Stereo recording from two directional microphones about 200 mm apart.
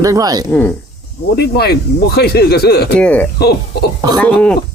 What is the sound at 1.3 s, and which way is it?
Speech, 55° left (ahead or behind).